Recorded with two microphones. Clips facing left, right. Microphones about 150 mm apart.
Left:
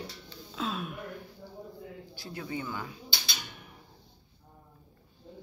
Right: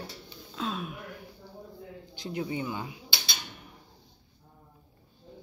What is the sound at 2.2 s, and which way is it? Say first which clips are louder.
Speech: right 5 dB; 20° right (ahead or behind).